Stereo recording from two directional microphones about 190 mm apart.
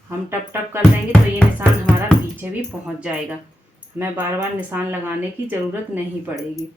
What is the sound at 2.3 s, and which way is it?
Speech, 10° right (ahead or behind).